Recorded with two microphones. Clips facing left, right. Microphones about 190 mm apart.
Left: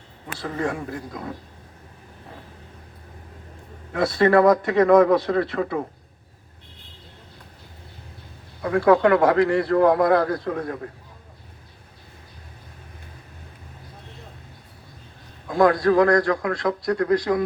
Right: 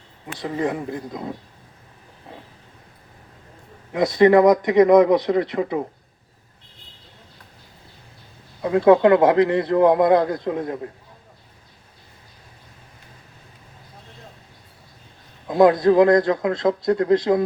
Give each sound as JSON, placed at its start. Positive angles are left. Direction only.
{"t": 0.3, "sound": "a man's voice", "side_deg": -20}
{"t": 3.9, "sound": "a man's voice", "side_deg": -15}
{"t": 8.6, "sound": "a man's voice", "side_deg": -20}
{"t": 15.4, "sound": "a man's voice", "side_deg": -20}